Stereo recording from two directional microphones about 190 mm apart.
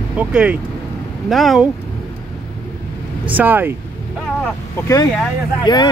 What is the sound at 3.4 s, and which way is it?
Speech, 10° right (ahead or behind).